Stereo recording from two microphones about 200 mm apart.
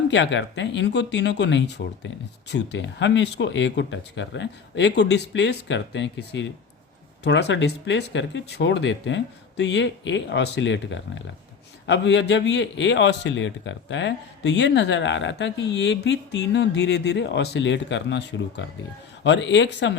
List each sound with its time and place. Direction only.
0.1 s a man's voice: 65° left (ahead or behind)